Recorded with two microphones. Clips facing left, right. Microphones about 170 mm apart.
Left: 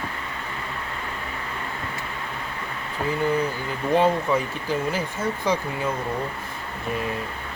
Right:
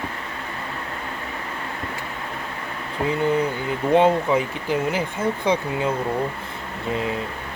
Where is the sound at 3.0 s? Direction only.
20° right (ahead or behind).